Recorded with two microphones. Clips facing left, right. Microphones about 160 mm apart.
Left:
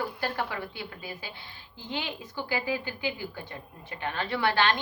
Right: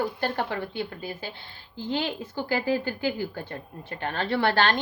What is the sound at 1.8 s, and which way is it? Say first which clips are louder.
A woman's voice: right 7 dB; 35° right (ahead or behind).